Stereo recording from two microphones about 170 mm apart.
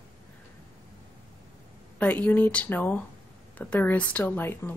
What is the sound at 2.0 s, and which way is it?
Speech, 10° left (ahead or behind).